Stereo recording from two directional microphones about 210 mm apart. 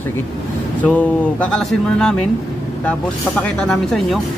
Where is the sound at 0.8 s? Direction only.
5° left (ahead or behind).